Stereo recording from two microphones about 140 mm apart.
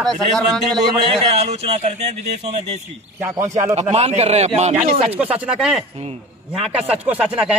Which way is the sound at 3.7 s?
50° right (ahead or behind).